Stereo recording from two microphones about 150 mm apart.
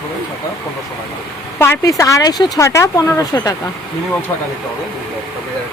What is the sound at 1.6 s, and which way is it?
Speech, 20° left (ahead or behind).